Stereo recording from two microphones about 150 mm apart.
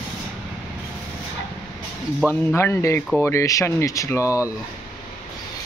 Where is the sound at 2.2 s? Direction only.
10° left (ahead or behind).